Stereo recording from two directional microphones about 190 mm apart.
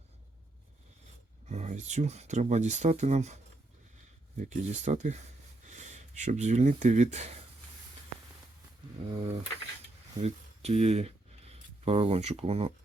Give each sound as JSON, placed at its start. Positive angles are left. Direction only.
{"t": 1.5, "sound": "speech", "side_deg": -35}
{"t": 9.1, "sound": "speech", "side_deg": -30}